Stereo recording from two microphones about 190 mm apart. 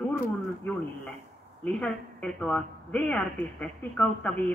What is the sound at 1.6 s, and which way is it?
Speech, centre (ahead or behind).